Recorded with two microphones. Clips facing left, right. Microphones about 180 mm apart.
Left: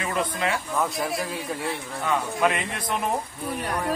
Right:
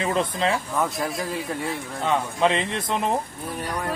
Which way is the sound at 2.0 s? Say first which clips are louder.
Right 2 dB; 25° right (ahead or behind).